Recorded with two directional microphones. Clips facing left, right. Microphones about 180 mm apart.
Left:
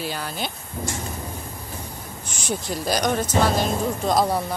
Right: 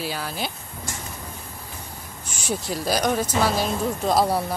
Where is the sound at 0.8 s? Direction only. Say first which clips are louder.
Left 7 dB; 50° left (ahead or behind).